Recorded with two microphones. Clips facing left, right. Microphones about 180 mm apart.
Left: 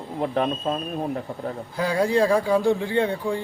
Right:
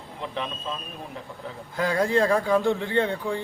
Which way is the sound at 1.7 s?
15° left (ahead or behind).